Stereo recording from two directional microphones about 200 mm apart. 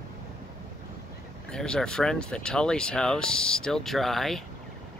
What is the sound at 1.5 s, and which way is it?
Speech, 5° left (ahead or behind).